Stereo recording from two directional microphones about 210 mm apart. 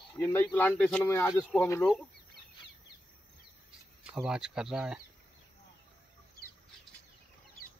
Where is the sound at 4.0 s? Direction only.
5° right (ahead or behind).